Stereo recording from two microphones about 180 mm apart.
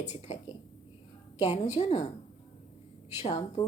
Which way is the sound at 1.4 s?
35° left (ahead or behind).